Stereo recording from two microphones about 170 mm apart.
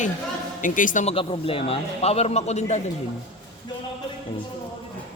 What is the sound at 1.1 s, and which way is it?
A man's voice, 35° left (ahead or behind).